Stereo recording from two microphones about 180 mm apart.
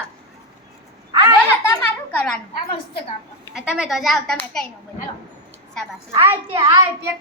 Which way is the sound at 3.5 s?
5° right (ahead or behind).